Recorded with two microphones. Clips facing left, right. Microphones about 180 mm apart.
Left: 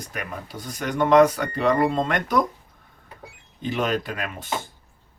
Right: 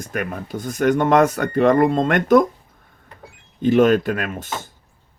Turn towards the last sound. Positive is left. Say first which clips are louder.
# right 6 dB
turn(degrees=-50)  # may be behind; listen again after turning